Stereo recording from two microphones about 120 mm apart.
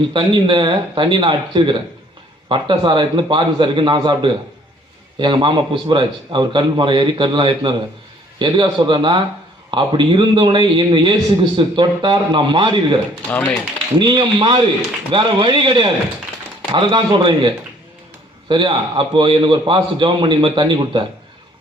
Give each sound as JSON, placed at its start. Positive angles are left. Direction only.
{"t": 0.1, "sound": "a man's voice", "side_deg": -45}
{"t": 14.0, "sound": "a man's voice", "side_deg": -35}